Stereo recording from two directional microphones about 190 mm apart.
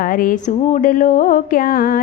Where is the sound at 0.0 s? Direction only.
45° left (ahead or behind).